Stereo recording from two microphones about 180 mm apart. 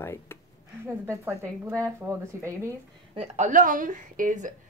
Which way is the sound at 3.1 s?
40° right (ahead or behind).